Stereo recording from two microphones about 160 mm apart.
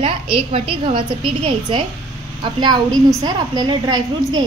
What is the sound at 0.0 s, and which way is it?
A woman's voice, 35° right (ahead or behind).